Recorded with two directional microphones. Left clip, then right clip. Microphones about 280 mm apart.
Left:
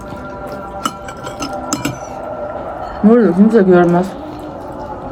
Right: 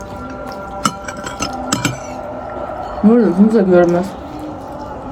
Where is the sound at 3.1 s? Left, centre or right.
Centre.